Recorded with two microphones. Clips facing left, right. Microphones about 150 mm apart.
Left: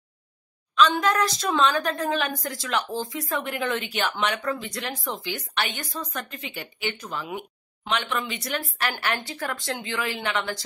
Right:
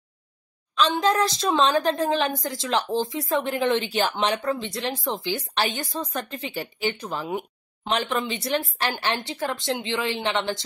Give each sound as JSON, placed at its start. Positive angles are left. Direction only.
{"t": 0.8, "sound": "a woman's voice", "side_deg": -25}